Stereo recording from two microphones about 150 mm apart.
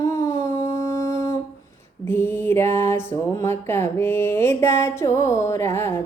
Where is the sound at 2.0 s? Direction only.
15° left (ahead or behind).